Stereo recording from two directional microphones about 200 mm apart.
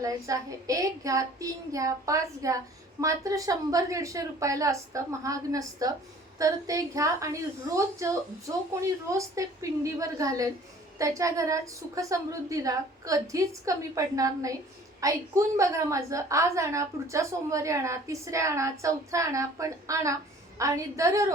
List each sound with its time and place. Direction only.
0.0 s a woman's voice: 15° right (ahead or behind)